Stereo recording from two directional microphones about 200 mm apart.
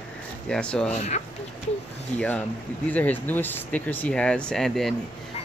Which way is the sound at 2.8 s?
10° left (ahead or behind).